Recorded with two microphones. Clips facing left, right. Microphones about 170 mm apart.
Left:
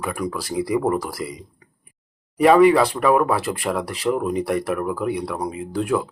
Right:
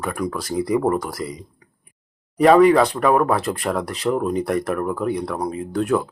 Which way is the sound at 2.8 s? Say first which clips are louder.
Even; 30° right (ahead or behind).